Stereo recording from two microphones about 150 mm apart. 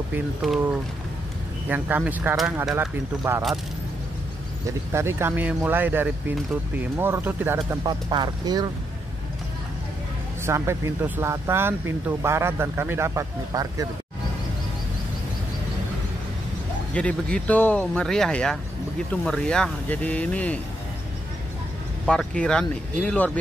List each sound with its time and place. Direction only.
0.4 s speech: centre (ahead or behind)
4.6 s speech: 15° right (ahead or behind)
7.8 s speech: 30° right (ahead or behind)
10.4 s speech: 20° right (ahead or behind)
16.9 s speech: 5° left (ahead or behind)
22.0 s speech: 5° left (ahead or behind)